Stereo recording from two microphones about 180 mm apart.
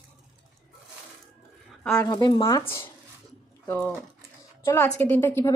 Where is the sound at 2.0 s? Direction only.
25° left (ahead or behind).